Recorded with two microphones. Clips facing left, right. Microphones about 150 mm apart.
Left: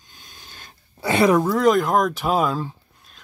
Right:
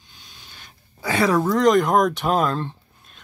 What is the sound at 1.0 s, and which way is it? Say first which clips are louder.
Speech: left 3 dB; 20° left (ahead or behind).